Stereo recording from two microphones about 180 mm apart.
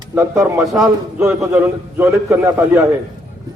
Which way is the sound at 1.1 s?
15° right (ahead or behind).